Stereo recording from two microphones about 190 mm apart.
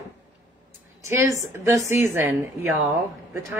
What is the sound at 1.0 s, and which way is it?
A woman's voice, 15° right (ahead or behind).